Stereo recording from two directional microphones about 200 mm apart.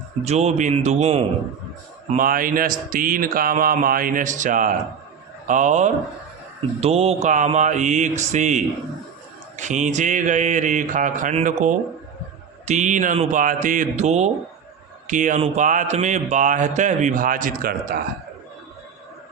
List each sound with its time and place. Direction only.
0.3 s mantra: 35° right (ahead or behind)
2.0 s speech: 45° right (ahead or behind)
5.5 s mantra: 40° right (ahead or behind)